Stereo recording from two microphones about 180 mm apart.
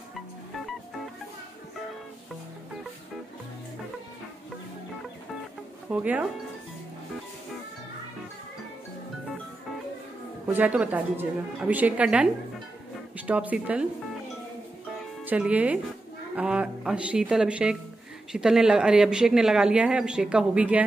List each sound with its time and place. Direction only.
5.9 s a woman's voice: 10° right (ahead or behind)
10.4 s a woman's voice: 10° right (ahead or behind)
13.3 s a woman's voice: 10° right (ahead or behind)
15.2 s a woman's voice: 10° right (ahead or behind)